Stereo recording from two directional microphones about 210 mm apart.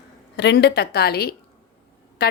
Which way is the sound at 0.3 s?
55° left (ahead or behind).